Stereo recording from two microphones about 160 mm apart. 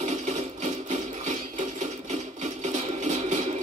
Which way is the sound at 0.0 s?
45° right (ahead or behind).